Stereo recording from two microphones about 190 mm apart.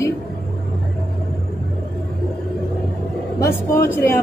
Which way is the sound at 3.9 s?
10° left (ahead or behind).